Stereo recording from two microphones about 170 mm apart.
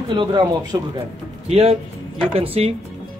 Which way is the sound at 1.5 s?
35° right (ahead or behind).